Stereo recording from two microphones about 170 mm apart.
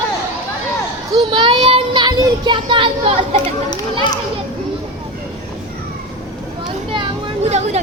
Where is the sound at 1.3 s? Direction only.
30° right (ahead or behind).